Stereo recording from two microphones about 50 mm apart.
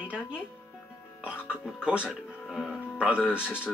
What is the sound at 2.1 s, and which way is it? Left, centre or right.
Speech, centre.